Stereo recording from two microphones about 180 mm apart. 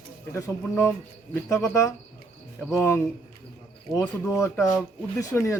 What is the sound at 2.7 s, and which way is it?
Speech, 15° left (ahead or behind).